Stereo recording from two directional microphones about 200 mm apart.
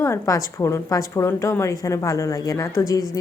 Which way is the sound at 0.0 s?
15° left (ahead or behind).